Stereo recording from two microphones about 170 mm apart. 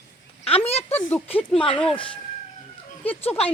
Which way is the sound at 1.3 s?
35° left (ahead or behind).